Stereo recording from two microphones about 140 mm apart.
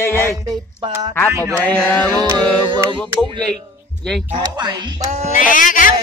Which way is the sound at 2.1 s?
30° right (ahead or behind).